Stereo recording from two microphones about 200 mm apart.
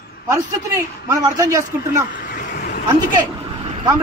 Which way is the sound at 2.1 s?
40° left (ahead or behind).